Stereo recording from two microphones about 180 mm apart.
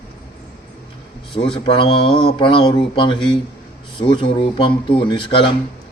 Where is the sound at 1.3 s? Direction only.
30° left (ahead or behind).